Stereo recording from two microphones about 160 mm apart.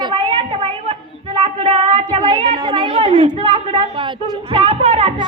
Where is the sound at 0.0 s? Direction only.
30° right (ahead or behind).